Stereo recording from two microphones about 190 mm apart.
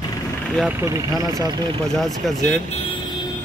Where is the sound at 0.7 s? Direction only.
15° right (ahead or behind).